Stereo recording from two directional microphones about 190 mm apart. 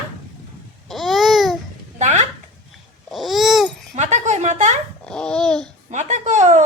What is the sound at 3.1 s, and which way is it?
Babbling, centre (ahead or behind).